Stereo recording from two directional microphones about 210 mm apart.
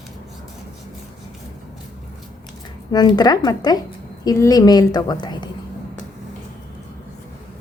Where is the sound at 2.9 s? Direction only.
20° left (ahead or behind).